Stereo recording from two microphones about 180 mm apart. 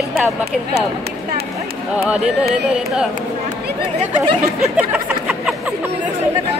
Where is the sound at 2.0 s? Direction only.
5° right (ahead or behind).